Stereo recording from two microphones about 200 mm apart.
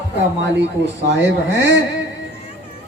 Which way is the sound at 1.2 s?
60° right (ahead or behind).